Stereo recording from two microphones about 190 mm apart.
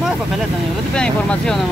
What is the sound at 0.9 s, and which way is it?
Speech, 5° left (ahead or behind).